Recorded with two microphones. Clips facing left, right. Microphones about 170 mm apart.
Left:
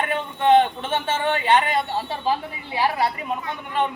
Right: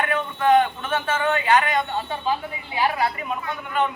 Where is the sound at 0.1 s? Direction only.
25° left (ahead or behind).